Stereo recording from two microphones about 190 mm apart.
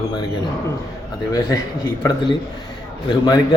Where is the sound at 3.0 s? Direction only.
25° left (ahead or behind).